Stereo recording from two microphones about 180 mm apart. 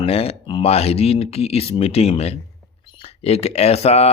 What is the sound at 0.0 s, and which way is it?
Speech, 35° left (ahead or behind).